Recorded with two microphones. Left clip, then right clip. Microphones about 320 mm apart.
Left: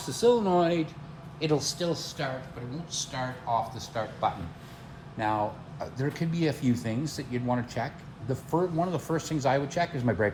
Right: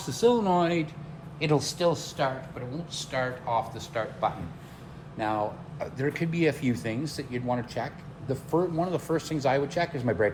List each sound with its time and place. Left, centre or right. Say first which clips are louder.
0.0 s a man's voice: even; right; by 2.3 s centre
2.9 s speech: right 3 dB; centre
5.8 s speech: right 3 dB; centre